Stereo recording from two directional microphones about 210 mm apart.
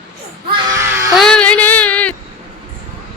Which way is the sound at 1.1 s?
5° left (ahead or behind).